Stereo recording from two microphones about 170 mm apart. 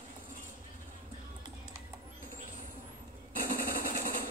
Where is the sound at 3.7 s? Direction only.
50° left (ahead or behind).